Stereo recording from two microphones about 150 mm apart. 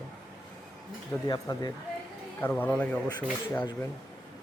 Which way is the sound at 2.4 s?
10° left (ahead or behind).